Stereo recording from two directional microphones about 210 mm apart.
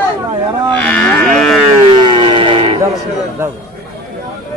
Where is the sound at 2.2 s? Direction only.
20° right (ahead or behind).